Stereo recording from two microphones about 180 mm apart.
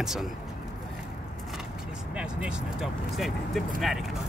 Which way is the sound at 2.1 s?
5° right (ahead or behind).